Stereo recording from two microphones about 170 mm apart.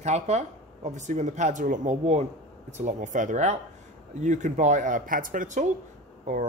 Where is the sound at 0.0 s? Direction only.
40° right (ahead or behind).